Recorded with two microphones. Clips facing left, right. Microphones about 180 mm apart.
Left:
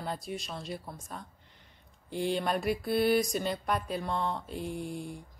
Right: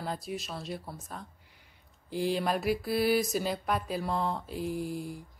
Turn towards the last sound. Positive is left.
turn(degrees=-5)  # may be behind; listen again after turning